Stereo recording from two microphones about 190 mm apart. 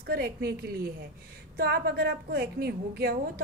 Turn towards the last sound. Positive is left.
turn(degrees=-55)  # may be behind; listen again after turning